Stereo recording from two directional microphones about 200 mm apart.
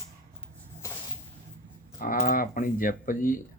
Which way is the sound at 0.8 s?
15° left (ahead or behind).